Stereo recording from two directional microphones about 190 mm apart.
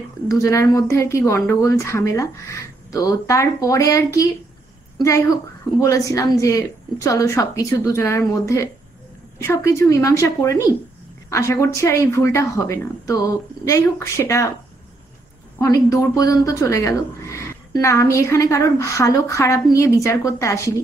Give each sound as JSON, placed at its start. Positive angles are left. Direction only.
{"t": 0.4, "sound": "a woman's voice", "side_deg": 15}
{"t": 15.6, "sound": "a woman's voice", "side_deg": 15}